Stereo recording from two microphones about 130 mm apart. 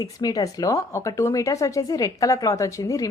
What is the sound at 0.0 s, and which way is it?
Speech, 30° left (ahead or behind).